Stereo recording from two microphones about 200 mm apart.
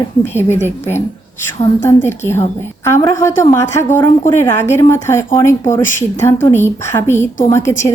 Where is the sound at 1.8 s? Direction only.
10° left (ahead or behind).